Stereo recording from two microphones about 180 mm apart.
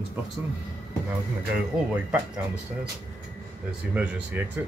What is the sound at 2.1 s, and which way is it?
Speech, 5° right (ahead or behind).